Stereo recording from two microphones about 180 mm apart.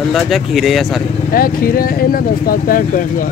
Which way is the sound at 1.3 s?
55° left (ahead or behind).